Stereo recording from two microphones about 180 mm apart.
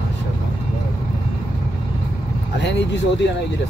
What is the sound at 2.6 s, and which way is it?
Speech, 75° left (ahead or behind).